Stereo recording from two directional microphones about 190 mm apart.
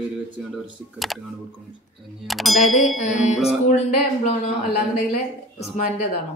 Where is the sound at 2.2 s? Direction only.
Centre (ahead or behind).